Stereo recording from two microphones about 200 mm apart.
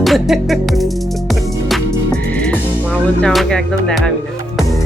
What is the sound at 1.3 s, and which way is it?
Music, centre (ahead or behind).